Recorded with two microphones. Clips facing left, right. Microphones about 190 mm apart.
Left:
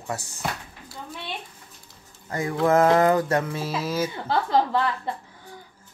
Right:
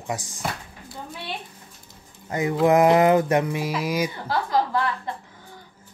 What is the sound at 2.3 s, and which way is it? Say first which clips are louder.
Speech: right 2 dB; 20° right (ahead or behind).